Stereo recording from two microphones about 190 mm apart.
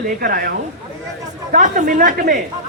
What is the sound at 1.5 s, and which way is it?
Speech, 45° right (ahead or behind).